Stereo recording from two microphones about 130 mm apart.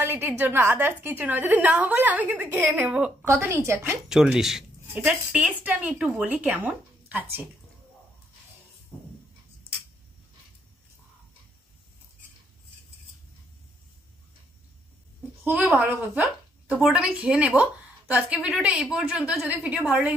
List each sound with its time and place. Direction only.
0.0 s a woman's voice: 15° right (ahead or behind)
2.9 s a woman's voice: 5° right (ahead or behind)
3.4 s a woman's voice: 20° right (ahead or behind)
4.1 s a woman's voice: 5° right (ahead or behind)
15.4 s a woman's voice: 15° right (ahead or behind)